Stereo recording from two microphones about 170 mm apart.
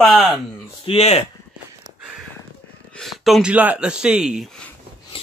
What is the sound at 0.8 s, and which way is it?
Speech, 35° left (ahead or behind).